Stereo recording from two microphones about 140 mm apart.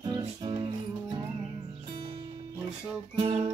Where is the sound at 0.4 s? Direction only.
30° right (ahead or behind).